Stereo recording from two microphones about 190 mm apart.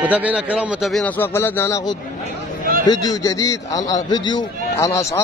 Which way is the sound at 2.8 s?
20° left (ahead or behind).